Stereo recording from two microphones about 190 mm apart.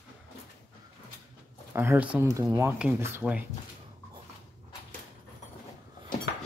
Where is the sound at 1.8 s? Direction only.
10° right (ahead or behind).